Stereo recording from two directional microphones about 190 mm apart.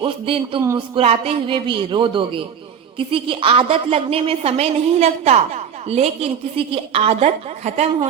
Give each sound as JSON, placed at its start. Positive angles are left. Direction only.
{"t": 0.0, "sound": "a woman's voice", "side_deg": -30}